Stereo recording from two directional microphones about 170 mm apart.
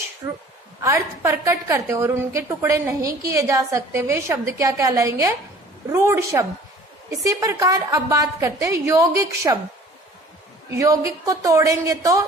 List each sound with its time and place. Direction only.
0.8 s a woman's voice: 15° right (ahead or behind)
10.8 s a woman's voice: 20° right (ahead or behind)